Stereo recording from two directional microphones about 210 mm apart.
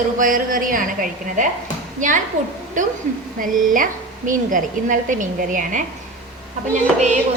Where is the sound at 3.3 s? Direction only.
40° right (ahead or behind).